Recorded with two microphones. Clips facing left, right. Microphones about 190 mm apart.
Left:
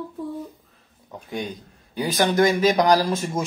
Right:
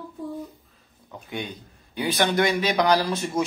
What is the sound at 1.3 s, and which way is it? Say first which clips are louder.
Mantra: left 3 dB; 40° left (ahead or behind).